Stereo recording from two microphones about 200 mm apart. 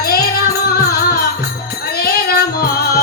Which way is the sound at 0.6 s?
50° left (ahead or behind).